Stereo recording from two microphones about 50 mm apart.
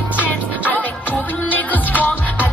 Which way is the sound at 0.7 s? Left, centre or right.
Left.